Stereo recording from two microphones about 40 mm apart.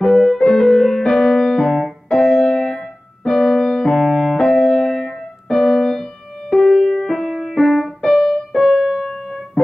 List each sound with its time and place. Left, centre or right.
0.0 s music: centre
0.4 s piano: centre
2.2 s music: centre
8.7 s keyboard: centre